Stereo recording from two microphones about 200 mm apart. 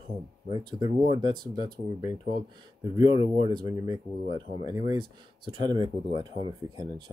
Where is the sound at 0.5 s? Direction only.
20° right (ahead or behind).